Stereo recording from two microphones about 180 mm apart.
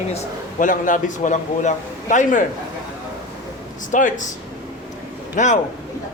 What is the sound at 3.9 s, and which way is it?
Speech, 45° left (ahead or behind).